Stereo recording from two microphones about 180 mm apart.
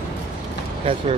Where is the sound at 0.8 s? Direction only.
30° right (ahead or behind).